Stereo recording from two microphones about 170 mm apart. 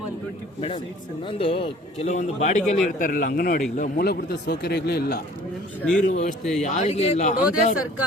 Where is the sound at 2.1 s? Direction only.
45° left (ahead or behind).